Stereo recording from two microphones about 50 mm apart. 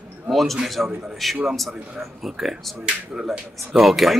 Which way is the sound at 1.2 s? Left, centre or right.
Centre.